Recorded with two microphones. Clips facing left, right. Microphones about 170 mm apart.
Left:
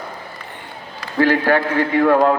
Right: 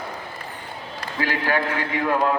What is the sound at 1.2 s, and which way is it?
A man's voice, 45° left (ahead or behind).